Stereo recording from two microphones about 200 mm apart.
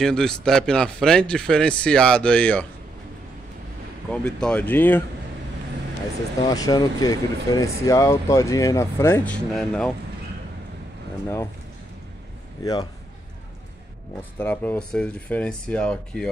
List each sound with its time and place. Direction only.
0.0 s speech: 5° left (ahead or behind)
4.1 s speech: 5° left (ahead or behind)
6.5 s speech: 20° left (ahead or behind); by 9.9 s centre (ahead or behind)
12.6 s a man's voice: 20° left (ahead or behind)
14.4 s speech: 10° left (ahead or behind)